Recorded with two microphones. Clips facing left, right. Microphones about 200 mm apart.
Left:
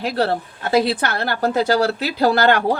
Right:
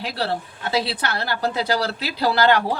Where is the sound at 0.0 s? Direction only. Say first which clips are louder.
Left 6 dB; 50° left (ahead or behind).